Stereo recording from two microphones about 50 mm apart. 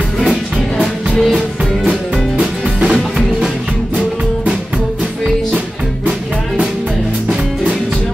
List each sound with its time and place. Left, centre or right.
2.8 s music: centre
6.0 s music: centre